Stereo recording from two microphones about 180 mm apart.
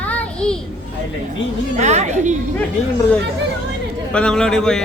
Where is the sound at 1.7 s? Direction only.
40° right (ahead or behind).